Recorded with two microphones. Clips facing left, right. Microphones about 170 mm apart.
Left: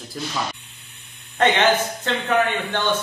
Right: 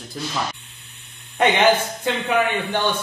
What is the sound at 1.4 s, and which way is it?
A man's voice, 10° right (ahead or behind).